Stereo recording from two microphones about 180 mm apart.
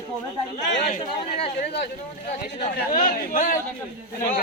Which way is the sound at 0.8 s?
35° left (ahead or behind).